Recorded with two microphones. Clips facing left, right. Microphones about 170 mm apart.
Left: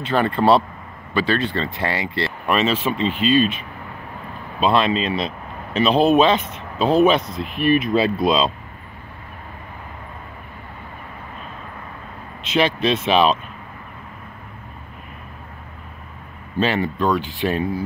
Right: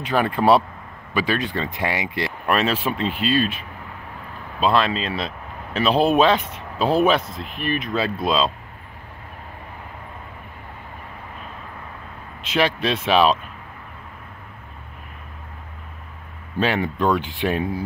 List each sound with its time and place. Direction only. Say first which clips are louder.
0.1 s speech: left 1 dB; 5° right (ahead or behind)
4.6 s speech: left 2 dB; centre (ahead or behind)
7.5 s speech: left 7 dB; 10° left (ahead or behind)
12.5 s speech: left 2 dB; 5° right (ahead or behind)
16.5 s speech: left 1 dB; 15° right (ahead or behind)